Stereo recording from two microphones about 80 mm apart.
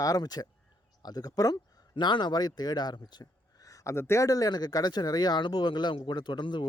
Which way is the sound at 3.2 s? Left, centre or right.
Left.